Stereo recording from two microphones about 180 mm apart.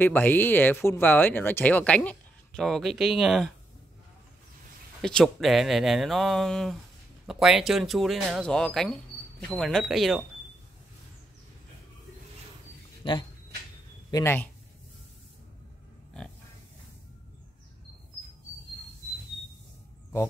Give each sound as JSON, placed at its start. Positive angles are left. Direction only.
{"t": 0.0, "sound": "speech", "side_deg": 10}
{"t": 5.0, "sound": "speech", "side_deg": 0}
{"t": 13.0, "sound": "speech", "side_deg": 30}
{"t": 14.1, "sound": "speech", "side_deg": 10}